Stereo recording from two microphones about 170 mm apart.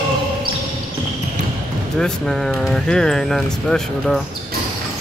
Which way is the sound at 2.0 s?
5° left (ahead or behind).